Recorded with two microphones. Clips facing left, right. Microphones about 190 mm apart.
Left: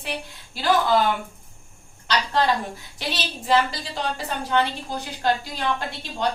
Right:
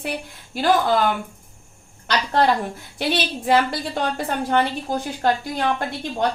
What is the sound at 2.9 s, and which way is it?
A woman's voice, 55° right (ahead or behind).